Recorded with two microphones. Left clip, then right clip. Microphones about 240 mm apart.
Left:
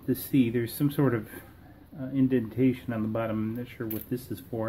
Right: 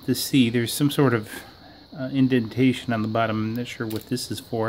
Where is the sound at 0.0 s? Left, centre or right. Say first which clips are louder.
Right 5 dB; right.